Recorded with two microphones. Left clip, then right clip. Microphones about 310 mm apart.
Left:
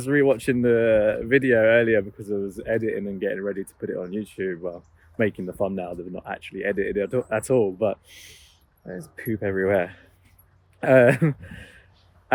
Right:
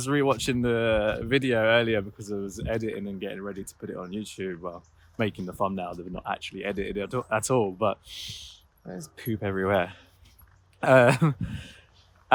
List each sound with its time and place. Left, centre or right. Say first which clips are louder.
0.0 s speech: left 5 dB; centre